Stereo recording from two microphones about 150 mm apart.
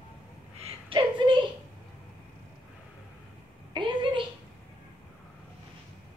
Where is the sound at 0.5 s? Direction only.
40° right (ahead or behind).